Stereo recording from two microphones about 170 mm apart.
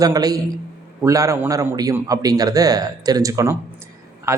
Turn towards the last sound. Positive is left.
turn(degrees=-15)  # may be behind; listen again after turning